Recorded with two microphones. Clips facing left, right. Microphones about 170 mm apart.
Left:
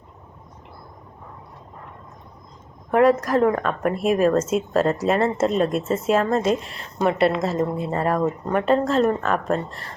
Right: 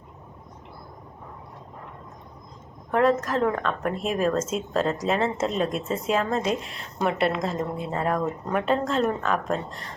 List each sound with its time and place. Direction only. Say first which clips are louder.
2.9 s speech: left 5 dB; 10° left (ahead or behind)